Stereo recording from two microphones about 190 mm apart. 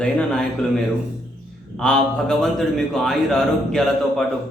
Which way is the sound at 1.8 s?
5° left (ahead or behind).